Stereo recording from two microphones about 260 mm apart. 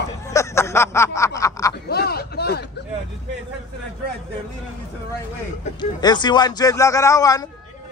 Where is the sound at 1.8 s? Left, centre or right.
Left.